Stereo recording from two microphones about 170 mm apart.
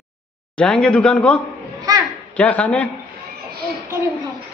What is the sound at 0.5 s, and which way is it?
Speech, 5° left (ahead or behind).